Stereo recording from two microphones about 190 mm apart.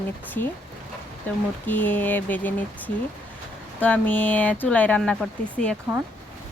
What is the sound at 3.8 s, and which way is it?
Speech, 10° left (ahead or behind).